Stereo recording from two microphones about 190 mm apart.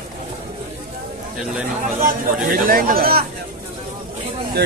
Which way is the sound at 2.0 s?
50° right (ahead or behind).